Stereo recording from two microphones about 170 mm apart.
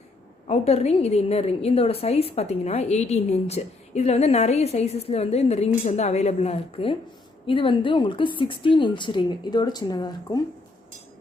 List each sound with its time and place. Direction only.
0.4 s a woman's voice: 40° left (ahead or behind)